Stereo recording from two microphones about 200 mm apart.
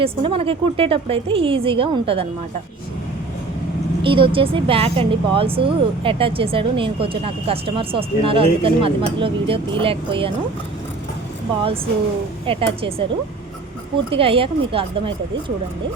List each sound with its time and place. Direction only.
0.0 s speech: 25° right (ahead or behind)
4.0 s speech: 25° right (ahead or behind)
12.5 s speech: 25° right (ahead or behind)
14.1 s speech: 25° right (ahead or behind)